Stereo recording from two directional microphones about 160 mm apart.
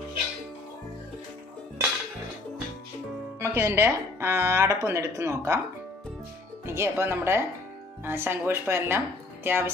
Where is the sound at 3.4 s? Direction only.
15° right (ahead or behind).